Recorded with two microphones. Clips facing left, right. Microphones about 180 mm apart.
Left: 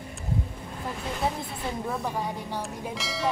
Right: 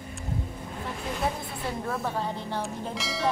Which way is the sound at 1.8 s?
15° left (ahead or behind).